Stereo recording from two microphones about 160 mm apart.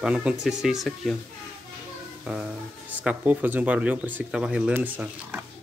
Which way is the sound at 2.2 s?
5° right (ahead or behind).